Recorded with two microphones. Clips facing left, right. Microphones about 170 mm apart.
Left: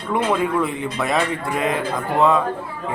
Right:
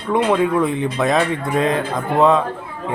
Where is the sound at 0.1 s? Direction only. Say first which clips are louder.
Right 4 dB; 20° right (ahead or behind).